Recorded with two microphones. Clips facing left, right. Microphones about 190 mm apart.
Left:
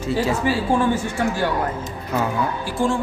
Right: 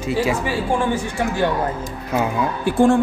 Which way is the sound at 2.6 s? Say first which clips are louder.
Right 10 dB; 55° right (ahead or behind).